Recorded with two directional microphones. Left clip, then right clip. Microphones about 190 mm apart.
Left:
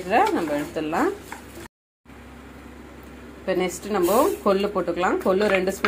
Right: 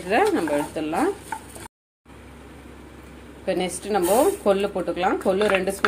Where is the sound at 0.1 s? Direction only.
20° right (ahead or behind).